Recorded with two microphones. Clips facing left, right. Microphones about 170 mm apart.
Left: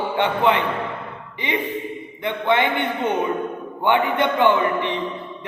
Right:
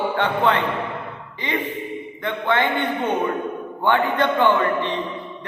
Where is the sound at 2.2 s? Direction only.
15° left (ahead or behind).